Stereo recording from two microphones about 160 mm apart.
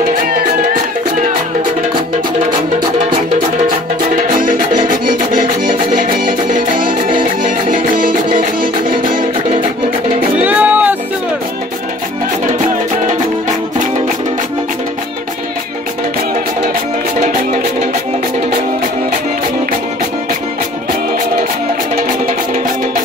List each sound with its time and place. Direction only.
4.4 s music: 55° right (ahead or behind)
10.4 s music: 10° right (ahead or behind)